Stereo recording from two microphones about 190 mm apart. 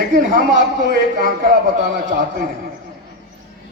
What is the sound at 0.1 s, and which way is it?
A man's voice, 40° right (ahead or behind).